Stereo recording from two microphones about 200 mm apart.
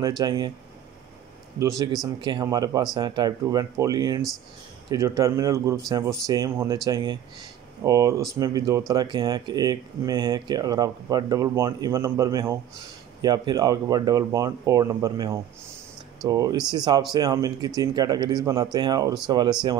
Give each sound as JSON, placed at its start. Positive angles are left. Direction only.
{"t": 0.2, "sound": "speech", "side_deg": -20}
{"t": 1.6, "sound": "speech", "side_deg": -15}